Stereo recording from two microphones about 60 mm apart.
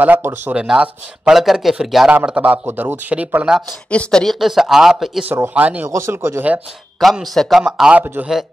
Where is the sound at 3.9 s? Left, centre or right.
Centre.